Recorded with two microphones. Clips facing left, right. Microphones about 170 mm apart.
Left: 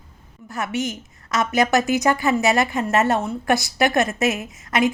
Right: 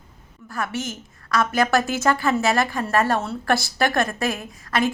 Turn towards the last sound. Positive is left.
turn(degrees=20)  # may be behind; listen again after turning